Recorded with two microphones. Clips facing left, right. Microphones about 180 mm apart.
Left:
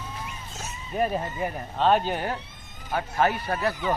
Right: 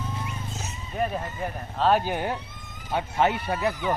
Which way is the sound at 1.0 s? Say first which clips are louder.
Left 2 dB; 5° left (ahead or behind).